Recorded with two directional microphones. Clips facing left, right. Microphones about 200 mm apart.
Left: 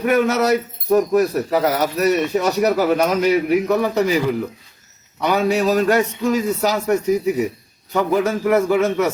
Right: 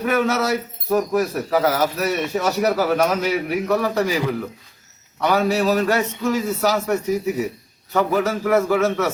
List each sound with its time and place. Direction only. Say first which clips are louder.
0.0 s a man's voice: left 3 dB; 20° left (ahead or behind)